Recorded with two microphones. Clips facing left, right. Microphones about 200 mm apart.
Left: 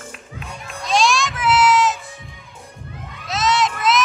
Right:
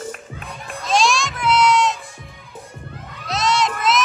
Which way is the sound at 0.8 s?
Centre (ahead or behind).